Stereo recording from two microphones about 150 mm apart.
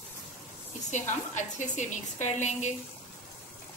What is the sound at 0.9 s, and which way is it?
A woman's voice, 55° left (ahead or behind).